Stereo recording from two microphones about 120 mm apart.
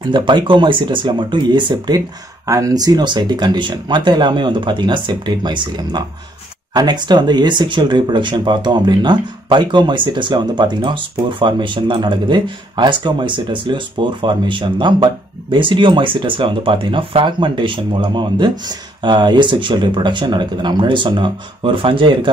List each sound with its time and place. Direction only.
0.1 s speech: 40° right (ahead or behind)
2.0 s speech: 30° right (ahead or behind); by 22.3 s 45° right (ahead or behind)